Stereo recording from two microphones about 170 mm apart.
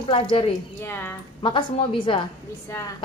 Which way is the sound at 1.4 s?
30° left (ahead or behind).